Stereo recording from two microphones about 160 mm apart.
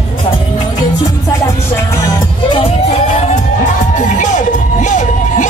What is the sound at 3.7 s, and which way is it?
Music, 50° left (ahead or behind).